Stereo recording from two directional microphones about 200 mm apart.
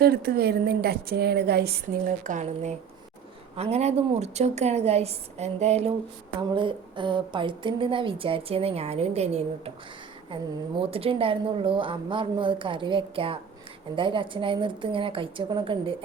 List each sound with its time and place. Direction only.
0.0 s a woman's voice: 50° right (ahead or behind); by 16.0 s 25° right (ahead or behind)